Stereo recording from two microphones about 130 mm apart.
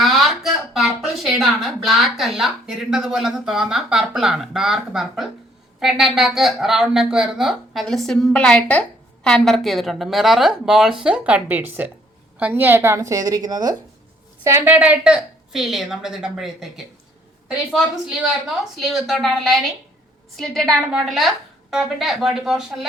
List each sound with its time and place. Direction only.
0.0 s a woman's voice: centre (ahead or behind); by 13.7 s 30° right (ahead or behind)
14.4 s a woman's voice: 20° right (ahead or behind); by 22.9 s 5° right (ahead or behind)